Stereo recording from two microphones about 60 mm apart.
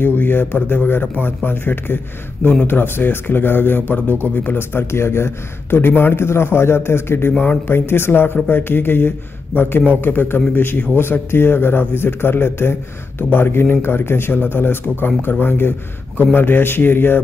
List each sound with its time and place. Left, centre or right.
0.2 s a man's voice: left
7.3 s a man's voice: left